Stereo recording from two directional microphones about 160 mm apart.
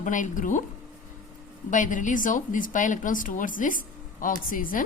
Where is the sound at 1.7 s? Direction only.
55° left (ahead or behind).